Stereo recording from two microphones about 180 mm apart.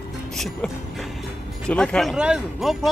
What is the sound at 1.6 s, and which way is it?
Speech, 5° left (ahead or behind).